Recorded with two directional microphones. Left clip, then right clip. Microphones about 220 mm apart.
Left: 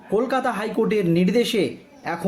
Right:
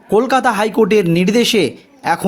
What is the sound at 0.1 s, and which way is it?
A man's voice, 45° right (ahead or behind).